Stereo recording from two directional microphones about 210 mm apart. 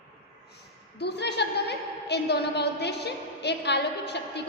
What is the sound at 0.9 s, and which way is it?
A woman's voice, 55° left (ahead or behind).